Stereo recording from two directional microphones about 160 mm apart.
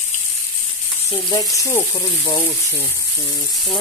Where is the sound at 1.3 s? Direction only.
20° left (ahead or behind).